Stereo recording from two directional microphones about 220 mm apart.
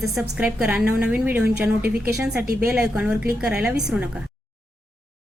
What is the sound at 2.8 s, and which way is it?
Speech, 5° right (ahead or behind).